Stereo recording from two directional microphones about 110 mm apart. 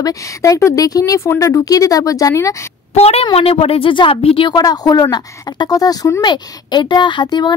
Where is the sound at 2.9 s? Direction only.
70° left (ahead or behind).